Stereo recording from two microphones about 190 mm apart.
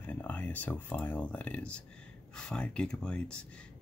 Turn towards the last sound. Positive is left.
turn(degrees=5)  # may be behind; listen again after turning